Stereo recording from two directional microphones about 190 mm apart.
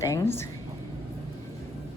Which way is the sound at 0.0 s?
15° left (ahead or behind).